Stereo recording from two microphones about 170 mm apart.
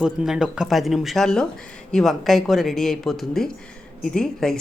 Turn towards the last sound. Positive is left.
turn(degrees=5)  # may be behind; listen again after turning